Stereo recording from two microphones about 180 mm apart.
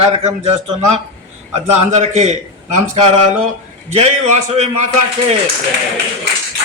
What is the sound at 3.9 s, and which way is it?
Speech, 35° right (ahead or behind).